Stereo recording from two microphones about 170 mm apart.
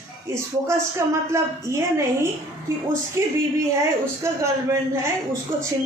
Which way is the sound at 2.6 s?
15° right (ahead or behind).